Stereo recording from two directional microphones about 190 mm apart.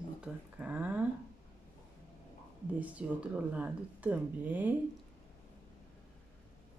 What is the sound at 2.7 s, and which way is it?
Speech, 5° right (ahead or behind).